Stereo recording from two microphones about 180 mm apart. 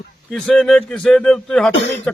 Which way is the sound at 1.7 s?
85° left.